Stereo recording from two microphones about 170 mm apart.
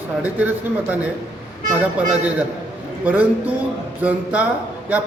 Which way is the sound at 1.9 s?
10° right (ahead or behind).